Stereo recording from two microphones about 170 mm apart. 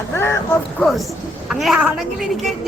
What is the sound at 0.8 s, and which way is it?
Speech, centre (ahead or behind).